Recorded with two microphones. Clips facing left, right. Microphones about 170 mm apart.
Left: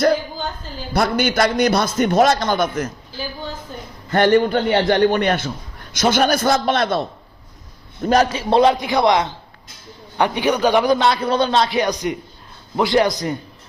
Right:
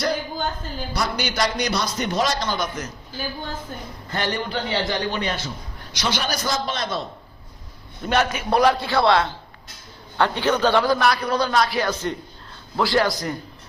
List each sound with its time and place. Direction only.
0.9 s a man's voice: 55° left (ahead or behind)
4.1 s a man's voice: 50° left (ahead or behind)
8.1 s a man's voice: 35° left (ahead or behind); by 13.3 s 20° left (ahead or behind)